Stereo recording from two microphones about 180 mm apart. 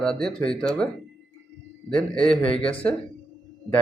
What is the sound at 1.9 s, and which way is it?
Speech, 5° left (ahead or behind).